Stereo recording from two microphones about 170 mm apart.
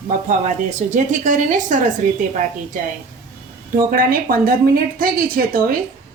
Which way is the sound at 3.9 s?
55° right (ahead or behind).